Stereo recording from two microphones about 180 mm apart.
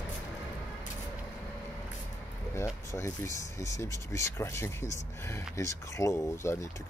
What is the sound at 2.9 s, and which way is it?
Speech, 15° left (ahead or behind).